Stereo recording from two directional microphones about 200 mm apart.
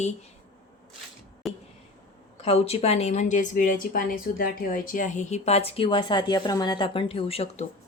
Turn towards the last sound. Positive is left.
turn(degrees=30)  # may be behind; listen again after turning